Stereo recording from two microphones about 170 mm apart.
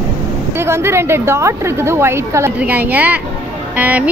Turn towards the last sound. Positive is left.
turn(degrees=-10)  # may be behind; listen again after turning